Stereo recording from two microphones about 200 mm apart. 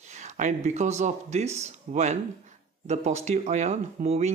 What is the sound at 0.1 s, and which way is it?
Speech, 35° right (ahead or behind).